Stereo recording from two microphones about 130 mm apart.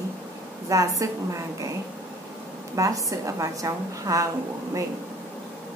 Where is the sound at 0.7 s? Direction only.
25° right (ahead or behind).